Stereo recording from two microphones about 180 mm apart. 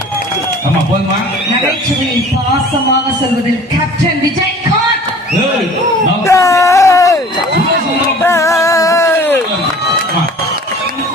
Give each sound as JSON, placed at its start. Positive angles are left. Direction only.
{"t": 6.2, "sound": "wail", "side_deg": 15}
{"t": 8.2, "sound": "music", "side_deg": 15}